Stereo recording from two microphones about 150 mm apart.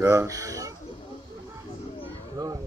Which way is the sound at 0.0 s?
20° right (ahead or behind).